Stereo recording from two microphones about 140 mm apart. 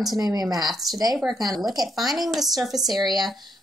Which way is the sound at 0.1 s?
30° right (ahead or behind).